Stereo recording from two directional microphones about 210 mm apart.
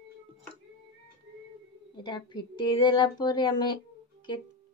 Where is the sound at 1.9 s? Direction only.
20° left (ahead or behind).